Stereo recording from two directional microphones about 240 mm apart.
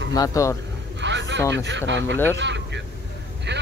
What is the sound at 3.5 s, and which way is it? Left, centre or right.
Speech, right.